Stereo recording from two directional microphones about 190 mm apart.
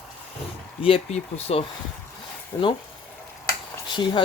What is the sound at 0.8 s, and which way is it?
Speech, 30° left (ahead or behind).